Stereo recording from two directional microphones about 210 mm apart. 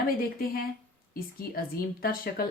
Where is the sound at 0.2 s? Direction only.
45° left (ahead or behind).